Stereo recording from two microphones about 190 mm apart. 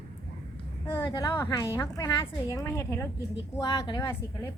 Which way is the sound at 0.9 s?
15° left (ahead or behind).